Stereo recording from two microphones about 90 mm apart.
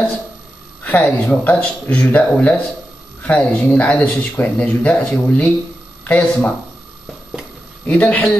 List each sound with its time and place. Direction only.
0.8 s speech: 15° left (ahead or behind)
7.8 s speech: 15° left (ahead or behind)